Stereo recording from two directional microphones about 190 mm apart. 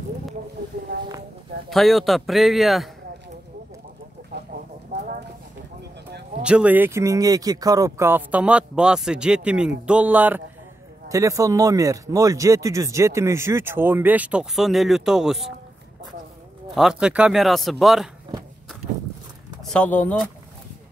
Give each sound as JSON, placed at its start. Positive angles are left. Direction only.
{"t": 1.7, "sound": "a man's voice", "side_deg": 0}
{"t": 4.3, "sound": "a sound", "side_deg": -60}
{"t": 4.9, "sound": "clip-clop", "side_deg": -65}
{"t": 6.4, "sound": "speech", "side_deg": -5}
{"t": 16.7, "sound": "a man's voice", "side_deg": -5}
{"t": 19.6, "sound": "speech", "side_deg": 5}